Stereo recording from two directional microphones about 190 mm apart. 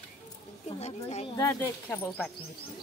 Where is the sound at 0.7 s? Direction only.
35° left (ahead or behind).